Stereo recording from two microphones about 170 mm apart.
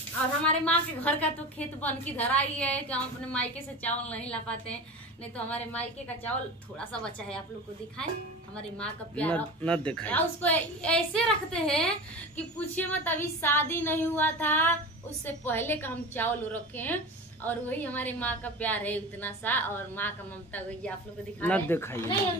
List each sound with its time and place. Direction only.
0.5 s a woman's voice: 10° left (ahead or behind)
8.5 s a woman's voice: 5° left (ahead or behind)